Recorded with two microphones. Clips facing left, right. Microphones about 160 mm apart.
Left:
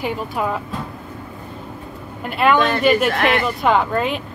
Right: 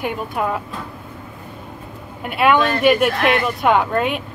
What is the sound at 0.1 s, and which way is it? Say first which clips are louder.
Speech: even; centre (ahead or behind).